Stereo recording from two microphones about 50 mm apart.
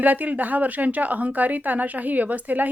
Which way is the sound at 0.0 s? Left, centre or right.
Right.